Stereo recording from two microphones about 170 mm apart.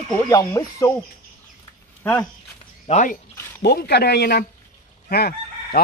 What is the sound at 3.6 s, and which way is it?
Speech, 70° left (ahead or behind).